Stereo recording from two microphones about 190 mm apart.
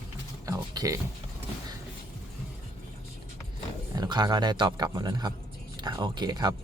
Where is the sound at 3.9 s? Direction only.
20° right (ahead or behind).